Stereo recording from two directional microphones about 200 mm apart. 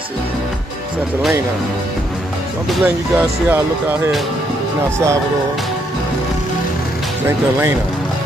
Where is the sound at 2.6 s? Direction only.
5° right (ahead or behind).